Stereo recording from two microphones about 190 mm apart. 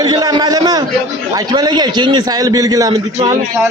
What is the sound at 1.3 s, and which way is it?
A man's voice, 20° right (ahead or behind).